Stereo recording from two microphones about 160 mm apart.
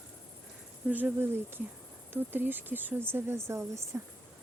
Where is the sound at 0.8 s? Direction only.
10° right (ahead or behind).